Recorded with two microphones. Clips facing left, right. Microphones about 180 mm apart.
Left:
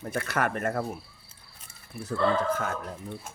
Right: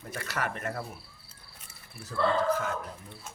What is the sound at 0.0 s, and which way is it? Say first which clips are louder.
Speech: left 6 dB; 50° left (ahead or behind).